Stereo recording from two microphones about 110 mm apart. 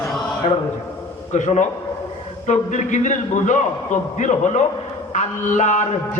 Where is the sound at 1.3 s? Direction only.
90° left.